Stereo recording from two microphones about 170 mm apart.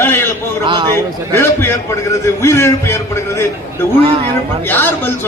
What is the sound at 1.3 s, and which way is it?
A man's voice, 15° left (ahead or behind).